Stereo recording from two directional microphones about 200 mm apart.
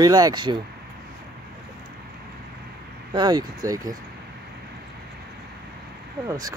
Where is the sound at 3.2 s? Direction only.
20° right (ahead or behind).